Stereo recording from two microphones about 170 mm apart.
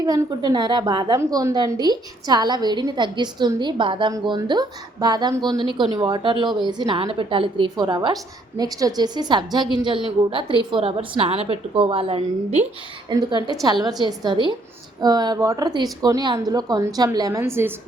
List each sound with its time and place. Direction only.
0.0 s a woman's voice: 25° right (ahead or behind)
13.1 s a woman's voice: 25° right (ahead or behind)